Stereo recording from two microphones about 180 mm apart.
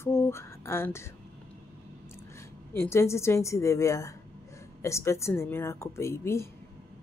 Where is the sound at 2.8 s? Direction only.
15° left (ahead or behind).